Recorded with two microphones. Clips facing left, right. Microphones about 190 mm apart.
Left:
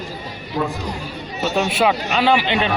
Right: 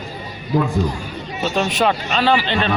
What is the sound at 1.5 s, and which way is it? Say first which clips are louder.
A man's voice: left 1 dB; 10° left (ahead or behind).